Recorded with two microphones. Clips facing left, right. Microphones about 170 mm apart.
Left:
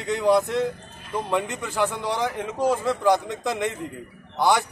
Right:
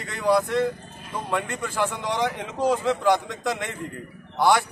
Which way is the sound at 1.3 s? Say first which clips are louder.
Even; 15° left (ahead or behind).